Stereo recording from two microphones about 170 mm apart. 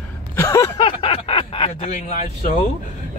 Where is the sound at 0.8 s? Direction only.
30° left (ahead or behind).